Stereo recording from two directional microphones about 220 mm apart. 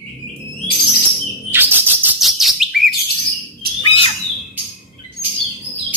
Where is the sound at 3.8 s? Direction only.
25° left (ahead or behind).